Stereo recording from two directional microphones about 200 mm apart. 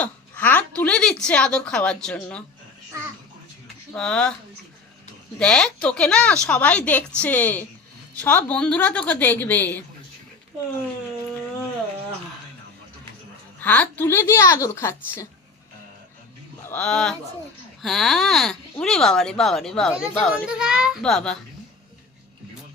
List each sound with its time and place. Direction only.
0.0 s a woman's voice: 10° left (ahead or behind)
3.9 s speech: 5° left (ahead or behind)
5.4 s a woman's voice: 5° left (ahead or behind)
13.6 s a woman's voice: 10° left (ahead or behind)
16.6 s speech: 5° left (ahead or behind)